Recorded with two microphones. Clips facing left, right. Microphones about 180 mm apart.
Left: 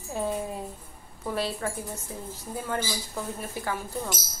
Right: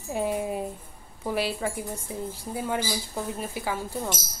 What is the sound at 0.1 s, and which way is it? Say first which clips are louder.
A woman's voice: right 3 dB; 15° right (ahead or behind).